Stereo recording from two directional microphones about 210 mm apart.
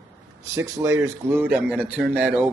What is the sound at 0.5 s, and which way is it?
A man's voice, 15° right (ahead or behind).